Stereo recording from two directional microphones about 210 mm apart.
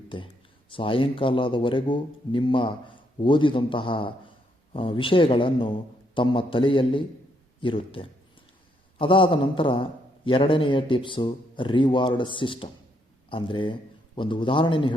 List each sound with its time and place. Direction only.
0.7 s a man's voice: 25° left (ahead or behind)